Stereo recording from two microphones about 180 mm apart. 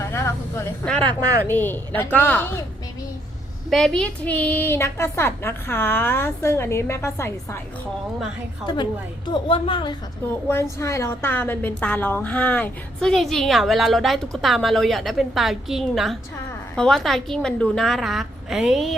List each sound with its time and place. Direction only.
0.0 s snake: 15° left (ahead or behind)
1.5 s a woman's voice: 10° left (ahead or behind)
3.7 s a woman's voice: centre (ahead or behind)
8.6 s a woman's voice: 25° left (ahead or behind)
10.5 s a woman's voice: 15° left (ahead or behind); by 18.9 s centre (ahead or behind)